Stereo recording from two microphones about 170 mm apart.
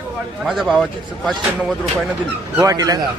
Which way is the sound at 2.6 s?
20° right (ahead or behind).